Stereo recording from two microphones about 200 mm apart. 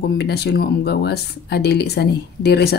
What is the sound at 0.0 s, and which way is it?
Speech, 55° left (ahead or behind).